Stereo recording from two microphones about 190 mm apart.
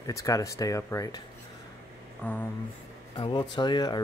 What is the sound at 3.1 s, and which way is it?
Speech, 25° left (ahead or behind).